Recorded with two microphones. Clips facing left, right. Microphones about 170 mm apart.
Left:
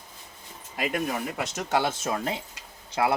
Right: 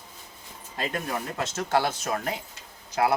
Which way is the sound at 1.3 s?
15° left (ahead or behind).